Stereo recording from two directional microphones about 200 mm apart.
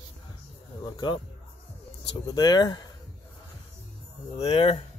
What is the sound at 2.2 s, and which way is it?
Speech, 20° left (ahead or behind).